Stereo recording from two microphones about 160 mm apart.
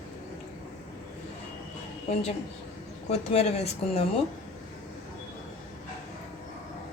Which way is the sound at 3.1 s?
40° left (ahead or behind).